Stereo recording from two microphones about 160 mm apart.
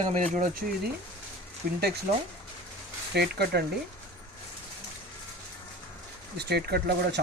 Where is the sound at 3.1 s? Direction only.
90° right.